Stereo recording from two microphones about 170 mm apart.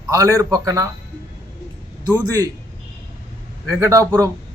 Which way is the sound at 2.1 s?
20° right (ahead or behind).